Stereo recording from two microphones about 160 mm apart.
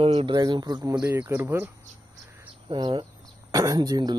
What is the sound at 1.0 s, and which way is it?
Speech, 10° right (ahead or behind).